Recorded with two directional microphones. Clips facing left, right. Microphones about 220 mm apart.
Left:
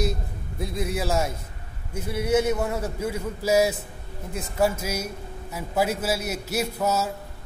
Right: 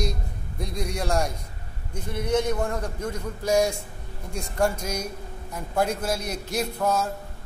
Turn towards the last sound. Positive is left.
turn(degrees=5)  # may be behind; listen again after turning